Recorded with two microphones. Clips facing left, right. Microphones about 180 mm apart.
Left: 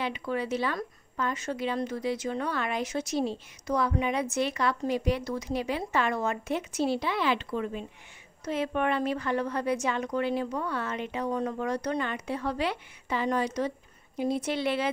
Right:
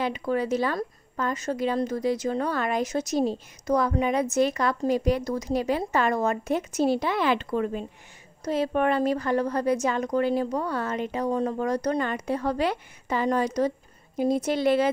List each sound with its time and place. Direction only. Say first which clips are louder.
0.0 s a woman's voice: right 5 dB; 40° right (ahead or behind)